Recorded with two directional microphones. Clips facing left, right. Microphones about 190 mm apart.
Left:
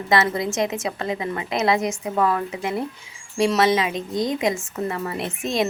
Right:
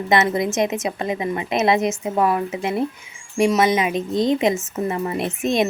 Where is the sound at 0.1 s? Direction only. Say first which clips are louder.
Right 2 dB; 20° right (ahead or behind).